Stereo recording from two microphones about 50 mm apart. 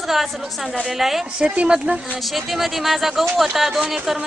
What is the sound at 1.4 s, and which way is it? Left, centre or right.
Speech, centre.